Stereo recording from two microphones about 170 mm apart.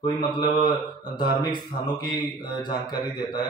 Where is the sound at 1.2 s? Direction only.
25° left (ahead or behind).